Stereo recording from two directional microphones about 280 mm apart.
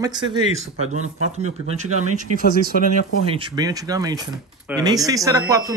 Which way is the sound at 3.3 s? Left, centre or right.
Centre.